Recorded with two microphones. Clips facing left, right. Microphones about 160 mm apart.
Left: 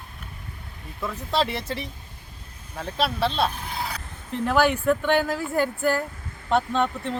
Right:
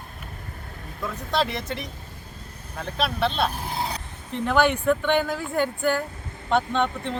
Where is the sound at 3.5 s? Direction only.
30° right (ahead or behind).